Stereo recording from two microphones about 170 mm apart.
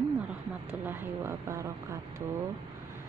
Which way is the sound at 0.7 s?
10° right (ahead or behind).